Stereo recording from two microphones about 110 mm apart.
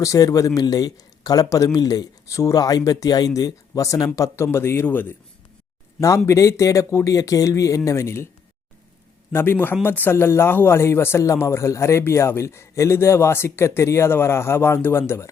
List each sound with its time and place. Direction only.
0.0 s a man's voice: 30° left (ahead or behind)
9.3 s a man's voice: 20° left (ahead or behind)